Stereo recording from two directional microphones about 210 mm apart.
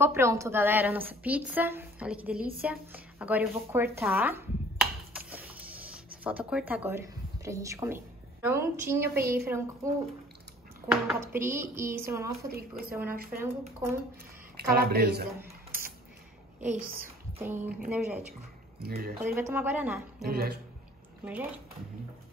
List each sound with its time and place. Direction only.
0.0 s a woman's voice: 10° right (ahead or behind)
4.7 s a sound: 5° right (ahead or behind)
6.2 s speech: 5° right (ahead or behind)
9.1 s a woman's voice: 45° right (ahead or behind)
10.9 s a woman's voice: 10° right (ahead or behind)
12.4 s a woman's voice: 45° right (ahead or behind)
13.3 s a woman's voice: 15° right (ahead or behind)
14.7 s a woman's voice: 45° right (ahead or behind)
16.5 s a child's voice: 10° right (ahead or behind)
18.8 s a woman's voice: 45° right (ahead or behind)
19.2 s a woman's voice: 10° right (ahead or behind)
20.2 s a woman's voice: 45° right (ahead or behind)
21.2 s speech: 10° right (ahead or behind)